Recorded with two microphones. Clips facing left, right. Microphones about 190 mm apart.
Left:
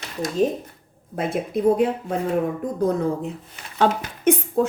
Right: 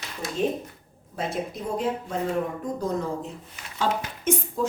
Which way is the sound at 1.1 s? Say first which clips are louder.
Left 6 dB; 55° left (ahead or behind).